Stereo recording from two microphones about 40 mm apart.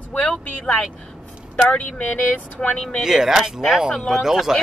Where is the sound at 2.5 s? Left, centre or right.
Left.